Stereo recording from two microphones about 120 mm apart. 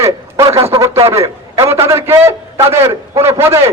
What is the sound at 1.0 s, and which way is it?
A man's voice, 25° right (ahead or behind).